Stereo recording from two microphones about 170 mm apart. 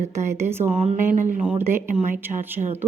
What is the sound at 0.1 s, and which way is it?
Speech, 15° right (ahead or behind).